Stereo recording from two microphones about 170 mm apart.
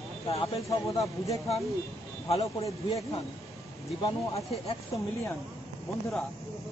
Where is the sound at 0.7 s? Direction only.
20° left (ahead or behind).